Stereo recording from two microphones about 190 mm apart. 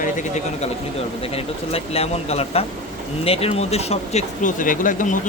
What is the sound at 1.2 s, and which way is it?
Speech, 30° left (ahead or behind).